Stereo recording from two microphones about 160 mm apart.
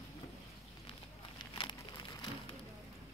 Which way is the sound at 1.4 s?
30° left (ahead or behind).